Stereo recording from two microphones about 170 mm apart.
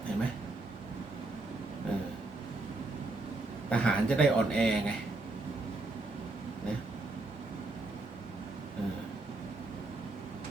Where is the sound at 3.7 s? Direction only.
5° left (ahead or behind).